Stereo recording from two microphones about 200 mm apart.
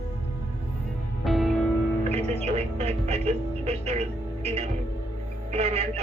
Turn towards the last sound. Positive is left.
turn(degrees=-30)  # may be behind; listen again after turning